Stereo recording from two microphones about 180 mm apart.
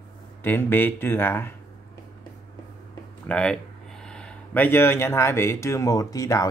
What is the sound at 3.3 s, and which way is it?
Speech, 5° left (ahead or behind).